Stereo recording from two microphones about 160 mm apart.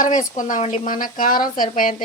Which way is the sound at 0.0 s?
55° left (ahead or behind).